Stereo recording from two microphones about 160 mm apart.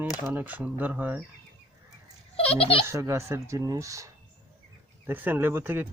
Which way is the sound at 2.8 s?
20° right (ahead or behind).